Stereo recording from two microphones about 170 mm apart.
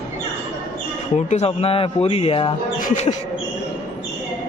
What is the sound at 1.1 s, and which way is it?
Speech, 40° left (ahead or behind).